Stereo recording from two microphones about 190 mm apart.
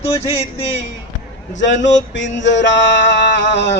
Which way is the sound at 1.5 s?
75° left (ahead or behind).